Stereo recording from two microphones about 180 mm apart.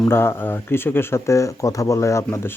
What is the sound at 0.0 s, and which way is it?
Speech, 15° left (ahead or behind).